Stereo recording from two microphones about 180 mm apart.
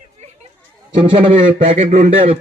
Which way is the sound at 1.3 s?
35° right (ahead or behind).